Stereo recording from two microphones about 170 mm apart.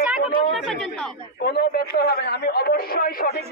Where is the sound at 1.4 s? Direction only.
65° left (ahead or behind).